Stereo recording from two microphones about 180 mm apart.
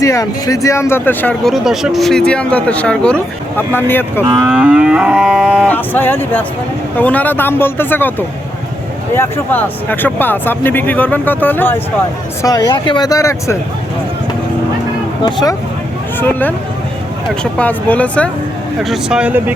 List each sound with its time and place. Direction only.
0.0 s speech: 20° left (ahead or behind)
4.4 s livestock: 5° right (ahead or behind)
5.6 s speech: 10° left (ahead or behind)
9.1 s speech: 10° left (ahead or behind)
15.2 s speech: 25° left (ahead or behind)
16.2 s speech: 10° left (ahead or behind)
18.8 s livestock: centre (ahead or behind)